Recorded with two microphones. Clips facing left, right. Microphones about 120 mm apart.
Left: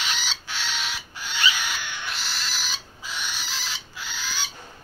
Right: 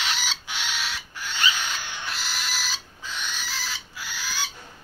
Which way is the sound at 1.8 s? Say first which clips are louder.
Left 1 dB; 35° right (ahead or behind).